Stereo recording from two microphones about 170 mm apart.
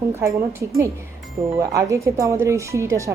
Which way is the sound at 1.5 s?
20° right (ahead or behind).